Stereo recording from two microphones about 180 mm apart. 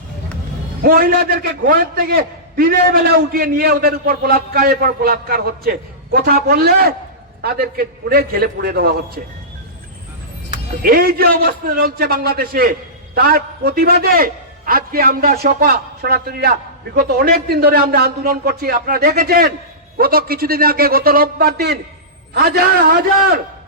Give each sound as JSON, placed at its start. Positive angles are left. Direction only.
{"t": 0.8, "sound": "a man's voice", "side_deg": -55}
{"t": 10.8, "sound": "a man's voice", "side_deg": -55}